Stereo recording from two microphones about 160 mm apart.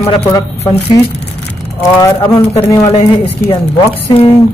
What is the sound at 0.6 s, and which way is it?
Speech, 40° left (ahead or behind).